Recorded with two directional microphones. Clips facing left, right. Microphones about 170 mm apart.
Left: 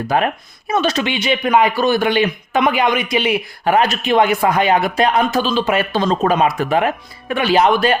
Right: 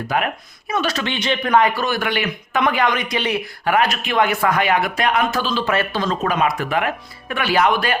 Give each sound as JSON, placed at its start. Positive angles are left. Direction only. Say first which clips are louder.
{"t": 0.1, "sound": "speech", "louder": "left 5 dB", "side_deg": 35}
{"t": 0.7, "sound": "speech", "louder": "left 4 dB", "side_deg": 25}
{"t": 3.7, "sound": "speech", "louder": "left 4 dB", "side_deg": 25}
{"t": 5.5, "sound": "speech", "louder": "left 4 dB", "side_deg": 20}
{"t": 6.1, "sound": "speech", "louder": "left 6 dB", "side_deg": 30}